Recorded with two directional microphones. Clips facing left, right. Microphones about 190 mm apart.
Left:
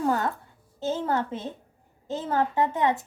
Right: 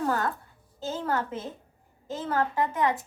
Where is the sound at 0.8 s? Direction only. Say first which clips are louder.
Left 3 dB; 25° left (ahead or behind).